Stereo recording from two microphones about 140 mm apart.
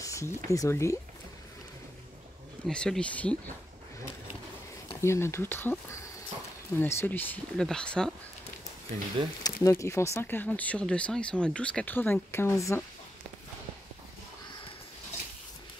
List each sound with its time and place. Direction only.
0.0 s a sound: 20° left (ahead or behind)
0.5 s speech: 20° left (ahead or behind)
2.6 s speech: 5° left (ahead or behind)
5.0 s speech: 20° left (ahead or behind)
6.8 s speech: 15° left (ahead or behind)
9.4 s speech: 20° left (ahead or behind)